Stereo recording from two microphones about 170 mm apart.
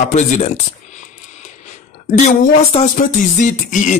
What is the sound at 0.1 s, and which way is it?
Speech, 45° left (ahead or behind).